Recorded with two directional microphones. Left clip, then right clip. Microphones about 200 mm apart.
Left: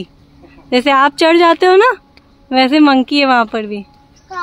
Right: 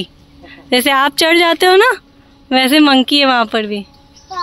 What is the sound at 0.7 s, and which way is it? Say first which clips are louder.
Speech: left 1 dB; centre (ahead or behind).